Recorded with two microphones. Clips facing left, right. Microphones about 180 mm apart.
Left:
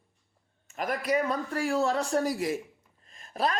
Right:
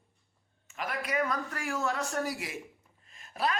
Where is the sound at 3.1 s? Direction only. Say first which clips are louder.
Left 3 dB; 35° left (ahead or behind).